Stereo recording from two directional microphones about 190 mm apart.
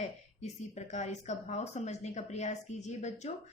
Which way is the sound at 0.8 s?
40° left (ahead or behind).